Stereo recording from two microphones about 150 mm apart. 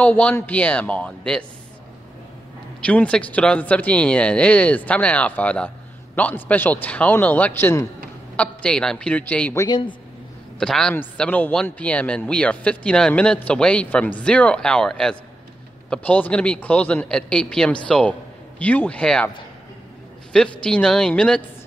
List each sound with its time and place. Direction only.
0.0 s a man's voice: 10° left (ahead or behind)
2.8 s a man's voice: 10° left (ahead or behind)
9.6 s a man's voice: 30° left (ahead or behind)
10.6 s a man's voice: 5° left (ahead or behind)
20.6 s a woman's voice: 5° left (ahead or behind)